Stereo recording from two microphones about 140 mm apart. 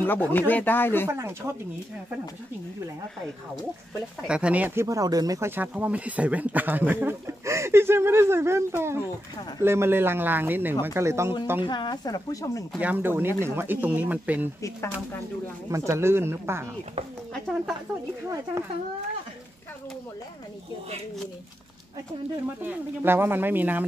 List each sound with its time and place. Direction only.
0.0 s speech: 15° left (ahead or behind)
1.0 s speech: 20° right (ahead or behind)
4.3 s speech: 10° right (ahead or behind)
11.6 s speech: 30° left (ahead or behind)
12.7 s speech: 10° right (ahead or behind)
15.7 s speech: 20° right (ahead or behind)
17.3 s speech: 5° right (ahead or behind)
22.6 s speech: 15° right (ahead or behind)